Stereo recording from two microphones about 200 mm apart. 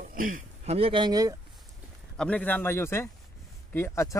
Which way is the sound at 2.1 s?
5° left (ahead or behind).